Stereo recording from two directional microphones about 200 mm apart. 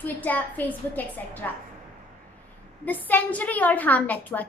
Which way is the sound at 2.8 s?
10° left (ahead or behind).